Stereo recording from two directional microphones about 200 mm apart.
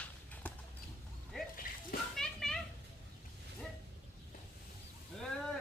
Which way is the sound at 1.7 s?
45° left (ahead or behind).